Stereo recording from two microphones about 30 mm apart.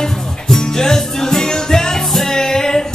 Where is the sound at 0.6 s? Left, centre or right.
Centre.